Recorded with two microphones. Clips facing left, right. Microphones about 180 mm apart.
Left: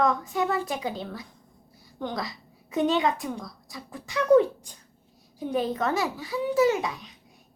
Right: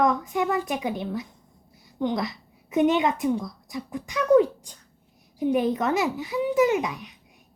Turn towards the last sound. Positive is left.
turn(degrees=-15)  # may be behind; listen again after turning